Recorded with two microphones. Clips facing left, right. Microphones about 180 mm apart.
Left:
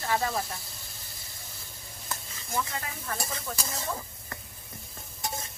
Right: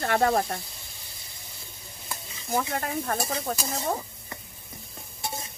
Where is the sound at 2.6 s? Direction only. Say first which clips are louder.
Right 7 dB; 60° right (ahead or behind).